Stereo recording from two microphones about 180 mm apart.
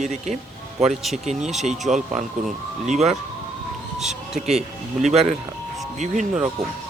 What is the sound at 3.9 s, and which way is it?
Music, centre (ahead or behind).